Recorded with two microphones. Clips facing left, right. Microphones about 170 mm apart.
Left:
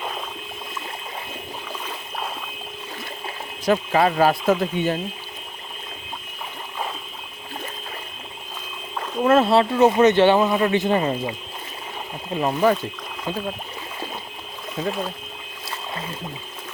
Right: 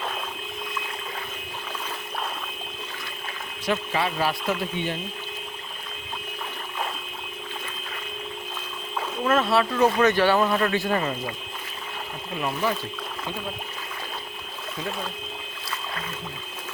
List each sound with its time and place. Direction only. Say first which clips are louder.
3.7 s speech: left 7 dB; 45° left (ahead or behind)
9.2 s speech: left 6 dB; 30° left (ahead or behind)
12.4 s speech: left 8 dB; 40° left (ahead or behind)